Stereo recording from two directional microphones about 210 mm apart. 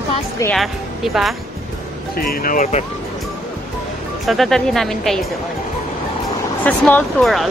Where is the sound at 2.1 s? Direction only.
40° left (ahead or behind).